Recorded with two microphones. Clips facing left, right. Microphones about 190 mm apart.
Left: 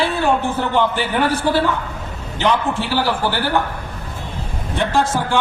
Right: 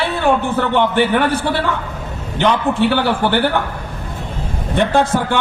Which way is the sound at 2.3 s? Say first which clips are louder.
Right 3 dB; 60° right (ahead or behind).